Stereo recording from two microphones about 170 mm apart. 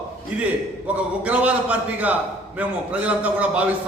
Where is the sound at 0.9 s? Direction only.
10° right (ahead or behind).